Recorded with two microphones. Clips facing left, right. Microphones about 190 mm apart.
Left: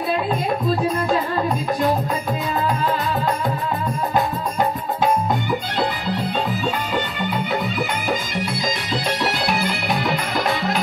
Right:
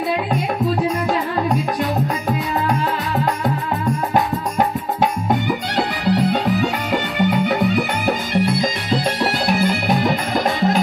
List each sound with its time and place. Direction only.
5.8 s music: 75° right (ahead or behind)
8.5 s music: 55° right (ahead or behind)